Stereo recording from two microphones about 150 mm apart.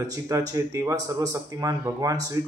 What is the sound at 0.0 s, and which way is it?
A man's voice, 25° right (ahead or behind).